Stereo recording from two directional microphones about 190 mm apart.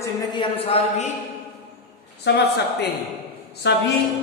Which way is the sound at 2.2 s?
60° left (ahead or behind).